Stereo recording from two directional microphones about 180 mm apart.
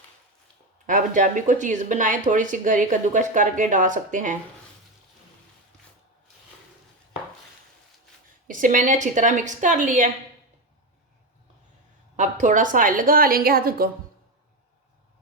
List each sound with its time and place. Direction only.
0.9 s speech: 45° right (ahead or behind)
8.4 s speech: 45° right (ahead or behind)
12.1 s speech: 45° right (ahead or behind)